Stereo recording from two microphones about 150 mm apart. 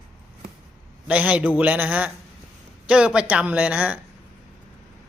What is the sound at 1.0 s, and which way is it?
A man's voice, 10° right (ahead or behind).